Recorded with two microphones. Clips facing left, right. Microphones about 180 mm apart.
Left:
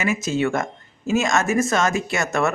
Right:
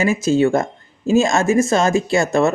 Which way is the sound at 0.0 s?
30° right (ahead or behind).